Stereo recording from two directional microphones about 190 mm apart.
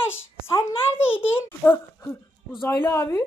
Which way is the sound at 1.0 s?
10° left (ahead or behind).